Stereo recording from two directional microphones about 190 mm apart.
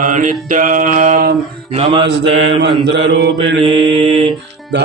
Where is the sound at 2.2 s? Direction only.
65° right (ahead or behind).